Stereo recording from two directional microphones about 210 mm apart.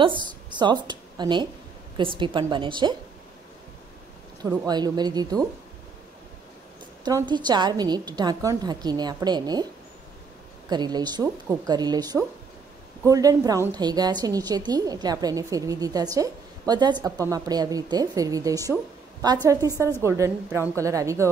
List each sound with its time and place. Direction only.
0.0 s a woman's voice: 20° right (ahead or behind)
4.4 s a woman's voice: 20° right (ahead or behind)
7.1 s a woman's voice: 20° right (ahead or behind)
10.7 s a woman's voice: 20° right (ahead or behind)